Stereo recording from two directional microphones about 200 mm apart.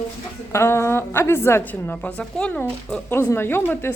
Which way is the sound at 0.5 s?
15° left (ahead or behind).